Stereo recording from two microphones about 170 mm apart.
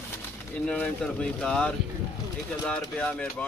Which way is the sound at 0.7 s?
5° left (ahead or behind).